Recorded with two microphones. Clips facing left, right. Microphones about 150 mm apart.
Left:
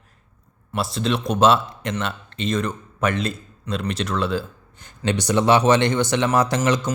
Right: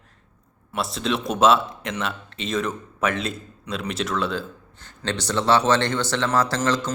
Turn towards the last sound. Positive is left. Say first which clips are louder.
# left 2 dB
turn(degrees=15)  # may be behind; listen again after turning